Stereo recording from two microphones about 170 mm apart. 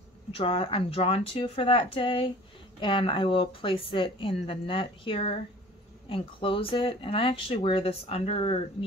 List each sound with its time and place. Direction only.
0.3 s speech: 35° left (ahead or behind)